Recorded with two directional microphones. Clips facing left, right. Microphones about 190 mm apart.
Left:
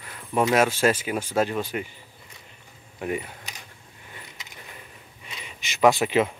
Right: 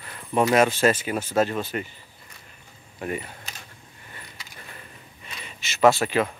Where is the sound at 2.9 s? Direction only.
10° left (ahead or behind).